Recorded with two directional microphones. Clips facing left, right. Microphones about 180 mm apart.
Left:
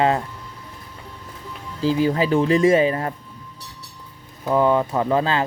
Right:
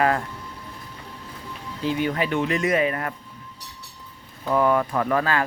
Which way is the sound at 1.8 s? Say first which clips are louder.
Left 5 dB; 30° left (ahead or behind).